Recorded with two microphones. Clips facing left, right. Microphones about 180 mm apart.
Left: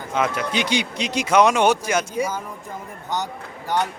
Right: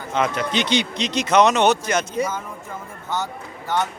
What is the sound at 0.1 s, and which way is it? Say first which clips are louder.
Speech: right 1 dB; 10° left (ahead or behind).